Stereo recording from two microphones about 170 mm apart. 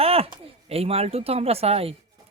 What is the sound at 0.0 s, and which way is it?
Speech, 35° right (ahead or behind).